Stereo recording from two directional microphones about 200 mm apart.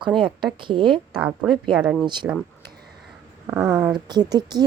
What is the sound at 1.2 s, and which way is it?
A woman's voice, 5° right (ahead or behind).